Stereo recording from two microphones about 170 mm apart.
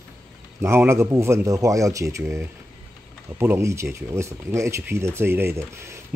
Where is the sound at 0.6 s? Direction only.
15° right (ahead or behind).